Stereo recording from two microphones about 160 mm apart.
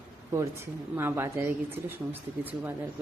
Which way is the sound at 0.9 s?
15° right (ahead or behind).